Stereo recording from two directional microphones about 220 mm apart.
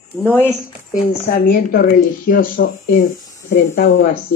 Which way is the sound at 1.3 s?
40° left (ahead or behind).